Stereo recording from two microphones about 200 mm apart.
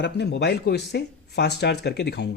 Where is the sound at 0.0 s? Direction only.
55° left (ahead or behind).